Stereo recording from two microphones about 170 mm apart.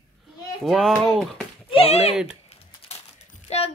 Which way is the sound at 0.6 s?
Centre (ahead or behind).